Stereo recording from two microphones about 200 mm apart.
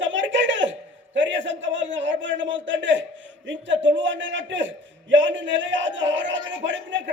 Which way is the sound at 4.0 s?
70° right (ahead or behind).